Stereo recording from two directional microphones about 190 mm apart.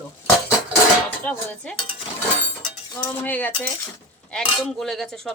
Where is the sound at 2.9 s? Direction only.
15° left (ahead or behind).